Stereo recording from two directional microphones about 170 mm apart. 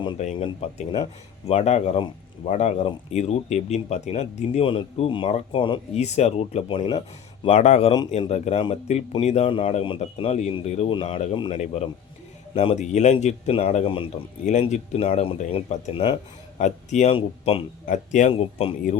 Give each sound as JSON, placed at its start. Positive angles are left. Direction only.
{"t": 0.2, "sound": "speech", "side_deg": 40}
{"t": 1.5, "sound": "speech", "side_deg": 40}
{"t": 7.4, "sound": "speech", "side_deg": 40}
{"t": 16.6, "sound": "speech", "side_deg": 45}
{"t": 17.8, "sound": "speech", "side_deg": 45}